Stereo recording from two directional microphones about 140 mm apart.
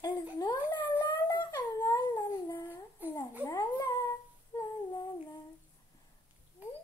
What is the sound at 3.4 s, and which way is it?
Dog, 25° left (ahead or behind).